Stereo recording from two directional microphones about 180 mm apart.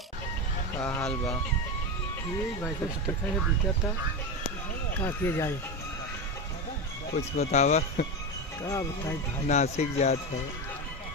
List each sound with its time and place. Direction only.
0.7 s speech: 10° left (ahead or behind)
5.0 s speech: 10° left (ahead or behind)
7.2 s speech: 40° left (ahead or behind)
8.6 s speech: 15° left (ahead or behind)
9.5 s speech: 40° left (ahead or behind)